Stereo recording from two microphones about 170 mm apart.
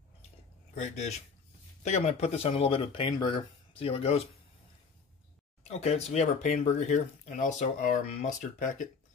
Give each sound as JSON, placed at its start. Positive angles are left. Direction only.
{"t": 0.7, "sound": "speech", "side_deg": 40}
{"t": 5.6, "sound": "speech", "side_deg": 40}